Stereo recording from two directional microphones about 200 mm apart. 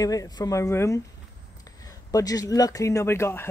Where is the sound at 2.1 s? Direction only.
15° left (ahead or behind).